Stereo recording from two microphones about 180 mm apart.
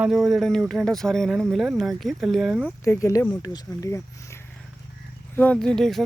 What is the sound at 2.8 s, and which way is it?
Speech, 15° left (ahead or behind).